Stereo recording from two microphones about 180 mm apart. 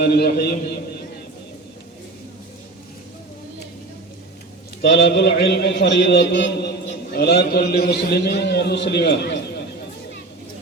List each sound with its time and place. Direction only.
0.0 s a man's voice: 65° left (ahead or behind)
4.8 s a man's voice: 75° left (ahead or behind)
7.1 s a man's voice: 65° left (ahead or behind)